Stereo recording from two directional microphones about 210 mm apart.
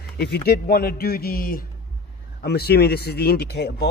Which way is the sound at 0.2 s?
50° left (ahead or behind).